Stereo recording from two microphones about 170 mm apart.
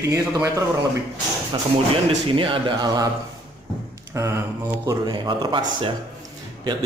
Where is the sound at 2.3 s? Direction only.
30° right (ahead or behind).